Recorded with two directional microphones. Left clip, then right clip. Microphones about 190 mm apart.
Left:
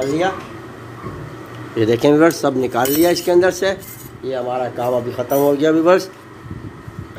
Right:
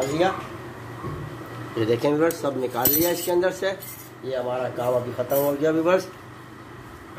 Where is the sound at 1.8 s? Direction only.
40° left (ahead or behind).